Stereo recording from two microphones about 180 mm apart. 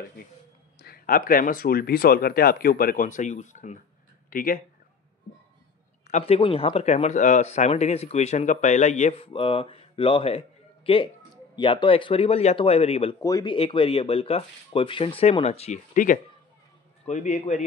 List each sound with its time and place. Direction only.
0.7 s speech: 55° left (ahead or behind)
4.3 s speech: 55° left (ahead or behind)
6.0 s speech: 35° left (ahead or behind)
9.3 s speech: 30° left (ahead or behind)
13.2 s speech: 20° left (ahead or behind); by 17.6 s 40° left (ahead or behind)